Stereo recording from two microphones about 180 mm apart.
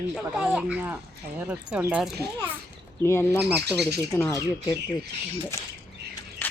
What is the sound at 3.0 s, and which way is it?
Speech, 10° left (ahead or behind).